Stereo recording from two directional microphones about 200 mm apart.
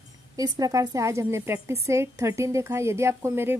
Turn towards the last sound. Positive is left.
turn(degrees=-10)  # may be behind; listen again after turning